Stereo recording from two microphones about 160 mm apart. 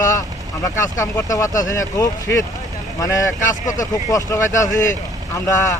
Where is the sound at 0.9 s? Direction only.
20° left (ahead or behind).